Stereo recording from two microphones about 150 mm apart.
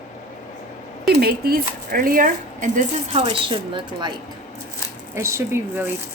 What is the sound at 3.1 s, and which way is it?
Speech, 35° right (ahead or behind).